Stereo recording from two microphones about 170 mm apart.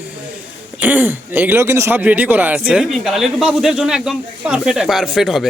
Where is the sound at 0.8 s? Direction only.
10° right (ahead or behind).